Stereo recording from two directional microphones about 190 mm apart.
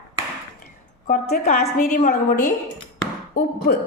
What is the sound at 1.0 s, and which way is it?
A woman's voice, 45° left (ahead or behind).